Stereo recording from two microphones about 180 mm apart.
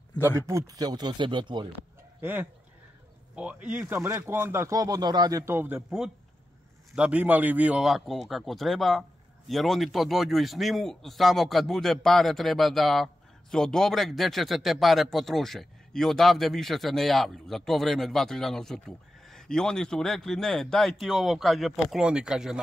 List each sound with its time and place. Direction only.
0.5 s speech: 20° right (ahead or behind)
3.3 s a man's voice: 5° right (ahead or behind)